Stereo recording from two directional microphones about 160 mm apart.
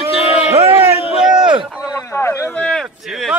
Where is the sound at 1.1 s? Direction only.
5° right (ahead or behind).